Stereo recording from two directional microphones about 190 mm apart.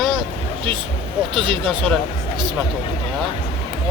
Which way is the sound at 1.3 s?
25° right (ahead or behind).